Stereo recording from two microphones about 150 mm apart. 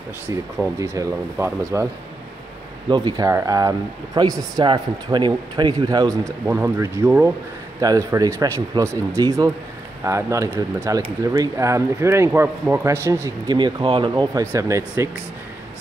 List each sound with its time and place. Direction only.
0.3 s speech: 20° right (ahead or behind)
2.9 s speech: 25° right (ahead or behind)
13.6 s speech: 30° right (ahead or behind)